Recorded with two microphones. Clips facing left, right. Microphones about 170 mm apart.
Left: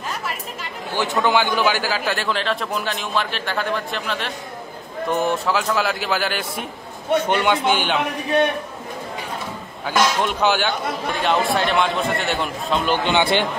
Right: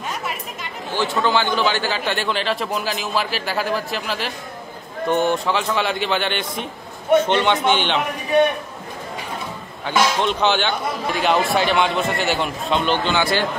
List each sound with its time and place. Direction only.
1.2 s a man's voice: 15° left (ahead or behind)
9.8 s a man's voice: 10° left (ahead or behind)
13.0 s a man's voice: 20° left (ahead or behind)